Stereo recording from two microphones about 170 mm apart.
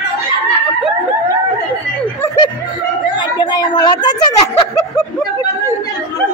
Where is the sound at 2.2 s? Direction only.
20° left (ahead or behind).